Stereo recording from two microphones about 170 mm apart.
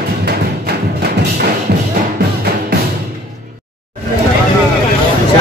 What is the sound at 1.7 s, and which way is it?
Music, 75° right (ahead or behind).